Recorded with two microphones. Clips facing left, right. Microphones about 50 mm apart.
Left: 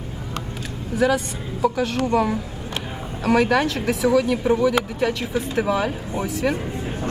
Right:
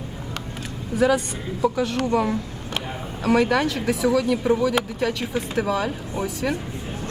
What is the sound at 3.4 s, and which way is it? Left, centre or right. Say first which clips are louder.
Speech: left 1 dB; left.